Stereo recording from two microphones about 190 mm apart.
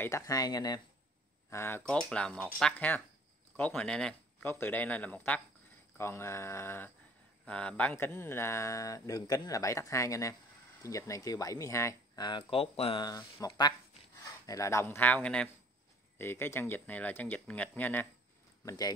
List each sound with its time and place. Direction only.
0.0 s speech: 15° left (ahead or behind)
18.7 s speech: 20° left (ahead or behind)